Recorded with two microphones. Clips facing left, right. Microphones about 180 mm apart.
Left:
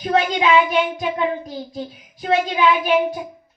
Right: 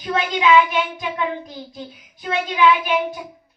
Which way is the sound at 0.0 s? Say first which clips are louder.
Left 2 dB; 45° left (ahead or behind).